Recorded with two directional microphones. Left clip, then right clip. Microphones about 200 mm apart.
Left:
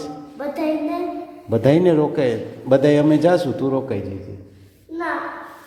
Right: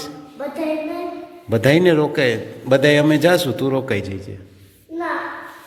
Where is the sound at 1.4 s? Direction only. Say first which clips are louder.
Right 1 dB; 5° left (ahead or behind).